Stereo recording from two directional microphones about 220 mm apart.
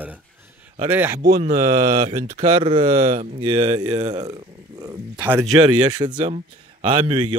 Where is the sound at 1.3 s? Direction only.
40° right (ahead or behind); by 4.4 s 20° right (ahead or behind).